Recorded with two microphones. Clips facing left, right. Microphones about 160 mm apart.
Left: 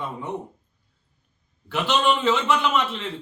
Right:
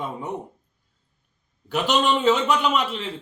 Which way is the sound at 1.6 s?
15° right (ahead or behind).